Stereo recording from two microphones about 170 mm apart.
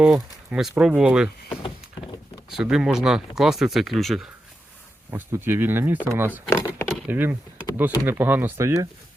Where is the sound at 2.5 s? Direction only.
5° right (ahead or behind).